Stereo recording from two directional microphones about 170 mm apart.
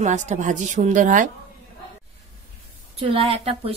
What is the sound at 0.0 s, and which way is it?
A woman's voice, 45° right (ahead or behind).